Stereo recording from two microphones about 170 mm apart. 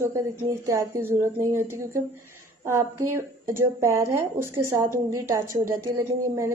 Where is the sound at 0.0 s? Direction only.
15° right (ahead or behind).